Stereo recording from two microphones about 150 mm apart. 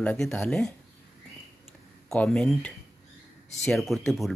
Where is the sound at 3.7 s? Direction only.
Centre (ahead or behind).